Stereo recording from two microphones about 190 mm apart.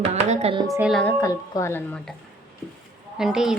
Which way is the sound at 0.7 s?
5° right (ahead or behind).